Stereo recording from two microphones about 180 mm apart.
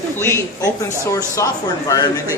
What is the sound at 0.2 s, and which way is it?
A man's voice, 15° left (ahead or behind).